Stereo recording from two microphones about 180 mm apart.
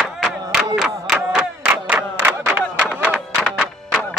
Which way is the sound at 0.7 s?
5° right (ahead or behind).